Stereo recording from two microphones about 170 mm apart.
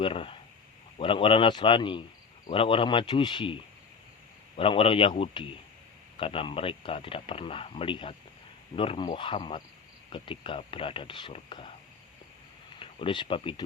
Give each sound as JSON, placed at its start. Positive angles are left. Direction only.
{"t": 0.0, "sound": "speech", "side_deg": 30}
{"t": 12.8, "sound": "speech", "side_deg": 30}